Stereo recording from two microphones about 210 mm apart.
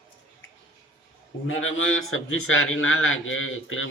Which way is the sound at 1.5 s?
70° left (ahead or behind).